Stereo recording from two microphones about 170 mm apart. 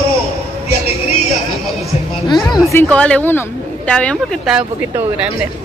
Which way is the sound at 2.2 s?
25° left (ahead or behind).